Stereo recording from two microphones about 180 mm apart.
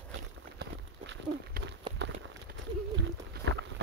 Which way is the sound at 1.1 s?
75° right (ahead or behind).